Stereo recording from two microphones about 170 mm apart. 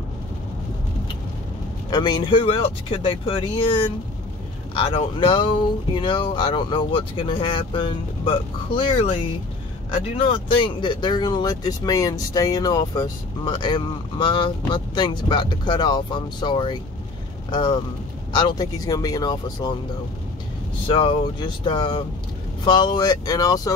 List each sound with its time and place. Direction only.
1.9 s speech: 25° left (ahead or behind)
20.8 s speech: 30° left (ahead or behind)